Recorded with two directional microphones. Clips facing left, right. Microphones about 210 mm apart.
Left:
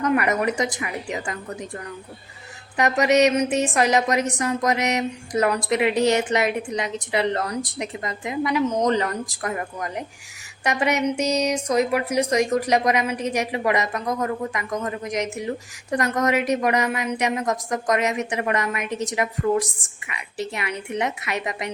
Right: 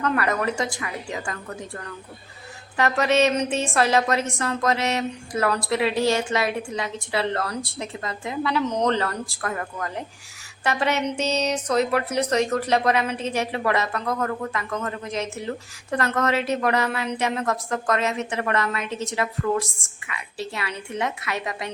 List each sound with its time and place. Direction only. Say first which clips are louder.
0.0 s a woman's voice: left 3 dB; 15° left (ahead or behind)
2.7 s speech: left 2 dB; 15° left (ahead or behind)